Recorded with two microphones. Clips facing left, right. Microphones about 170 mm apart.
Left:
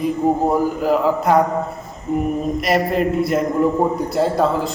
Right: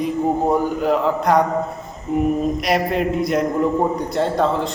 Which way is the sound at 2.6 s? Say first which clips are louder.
Left 1 dB; centre (ahead or behind).